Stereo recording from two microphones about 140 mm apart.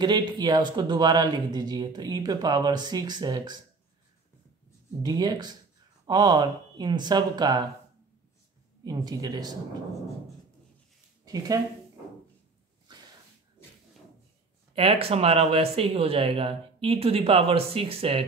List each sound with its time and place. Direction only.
0.0 s speech: 30° right (ahead or behind)
5.0 s speech: 30° right (ahead or behind)
8.8 s speech: 25° right (ahead or behind)
11.2 s speech: 25° right (ahead or behind)
14.8 s speech: 45° right (ahead or behind)